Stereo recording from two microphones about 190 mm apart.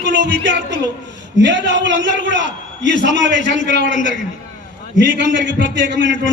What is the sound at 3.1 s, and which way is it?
Speech, 65° right (ahead or behind).